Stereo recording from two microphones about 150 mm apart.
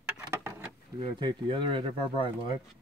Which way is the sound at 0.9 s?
35° right (ahead or behind).